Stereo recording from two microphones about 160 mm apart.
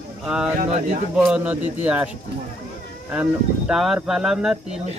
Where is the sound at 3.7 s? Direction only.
Centre (ahead or behind).